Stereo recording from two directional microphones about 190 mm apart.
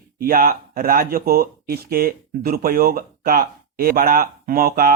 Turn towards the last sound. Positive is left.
turn(degrees=-50)  # may be behind; listen again after turning